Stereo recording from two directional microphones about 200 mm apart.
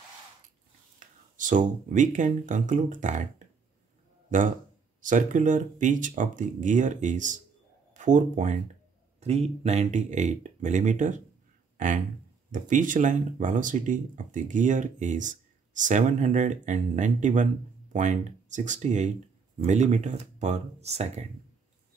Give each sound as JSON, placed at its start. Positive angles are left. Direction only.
{"t": 0.9, "sound": "speech", "side_deg": -40}
{"t": 5.0, "sound": "speech", "side_deg": -40}
{"t": 11.7, "sound": "a sound", "side_deg": -40}
{"t": 12.4, "sound": "speech", "side_deg": -40}